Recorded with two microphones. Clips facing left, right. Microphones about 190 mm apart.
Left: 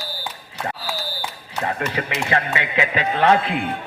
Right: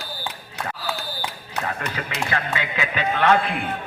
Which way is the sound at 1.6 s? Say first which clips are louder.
Left 6 dB; 25° left (ahead or behind).